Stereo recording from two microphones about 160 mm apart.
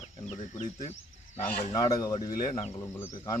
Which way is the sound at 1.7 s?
25° left (ahead or behind).